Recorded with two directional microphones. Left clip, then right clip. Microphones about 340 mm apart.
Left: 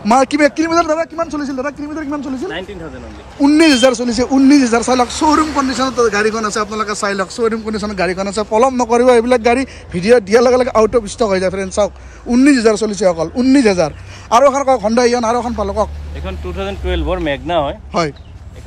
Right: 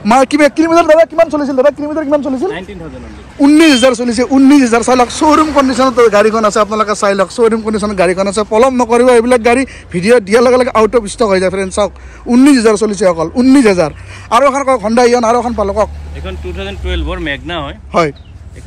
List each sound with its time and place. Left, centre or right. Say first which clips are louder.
0.0 s speech: right 3 dB; centre
16.3 s speech: even; left